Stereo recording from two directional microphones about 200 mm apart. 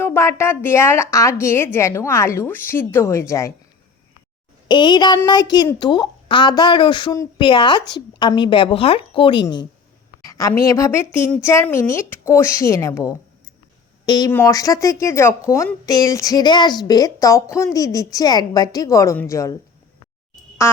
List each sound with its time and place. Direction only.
0.0 s speech: 15° left (ahead or behind)
4.7 s a woman's voice: 20° left (ahead or behind)
10.2 s a sound: 15° left (ahead or behind)
10.6 s speech: 15° left (ahead or behind)